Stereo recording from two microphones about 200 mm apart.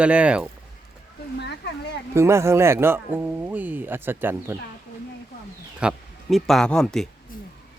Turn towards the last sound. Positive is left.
turn(degrees=0)  # may be behind; listen again after turning